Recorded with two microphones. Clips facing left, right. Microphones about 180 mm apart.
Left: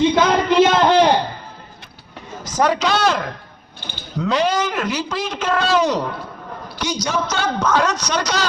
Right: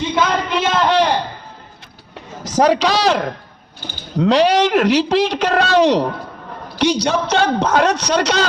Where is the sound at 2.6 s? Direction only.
75° right (ahead or behind).